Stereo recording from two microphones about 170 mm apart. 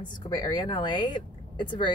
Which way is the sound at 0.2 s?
25° left (ahead or behind).